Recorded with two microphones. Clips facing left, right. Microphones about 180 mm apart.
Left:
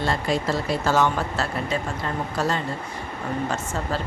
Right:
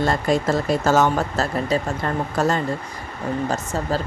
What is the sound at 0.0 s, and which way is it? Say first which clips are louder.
Speech: right 4 dB; 45° right (ahead or behind).